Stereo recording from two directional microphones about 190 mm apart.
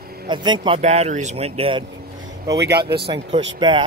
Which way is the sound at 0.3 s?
25° right (ahead or behind).